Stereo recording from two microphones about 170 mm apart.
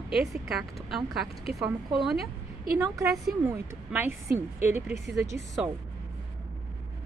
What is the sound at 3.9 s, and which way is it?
A woman's voice, 5° right (ahead or behind).